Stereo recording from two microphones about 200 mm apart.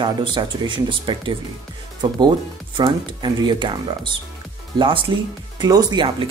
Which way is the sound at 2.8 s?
20° right (ahead or behind).